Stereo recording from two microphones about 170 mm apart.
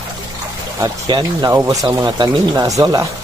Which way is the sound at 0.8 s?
25° right (ahead or behind).